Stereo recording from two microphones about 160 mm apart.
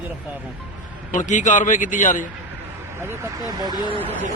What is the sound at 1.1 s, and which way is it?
A man's voice, 50° left (ahead or behind).